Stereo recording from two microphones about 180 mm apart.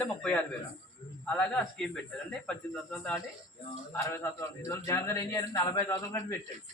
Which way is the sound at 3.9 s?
15° left (ahead or behind).